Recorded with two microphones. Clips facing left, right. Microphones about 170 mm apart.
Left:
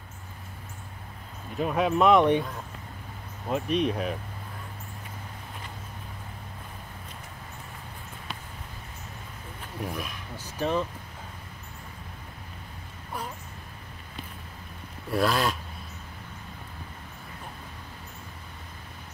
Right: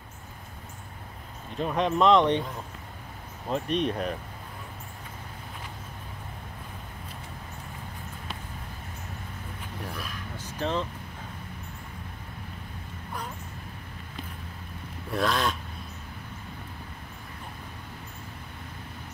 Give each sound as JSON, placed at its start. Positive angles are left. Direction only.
{"t": 1.6, "sound": "speech", "side_deg": 5}
{"t": 3.4, "sound": "speech", "side_deg": 5}
{"t": 9.8, "sound": "speech", "side_deg": 10}
{"t": 15.1, "sound": "speech", "side_deg": 5}